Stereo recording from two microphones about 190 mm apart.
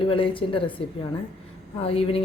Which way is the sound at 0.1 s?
30° left (ahead or behind).